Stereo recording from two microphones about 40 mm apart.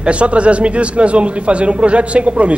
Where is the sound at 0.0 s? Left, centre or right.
Right.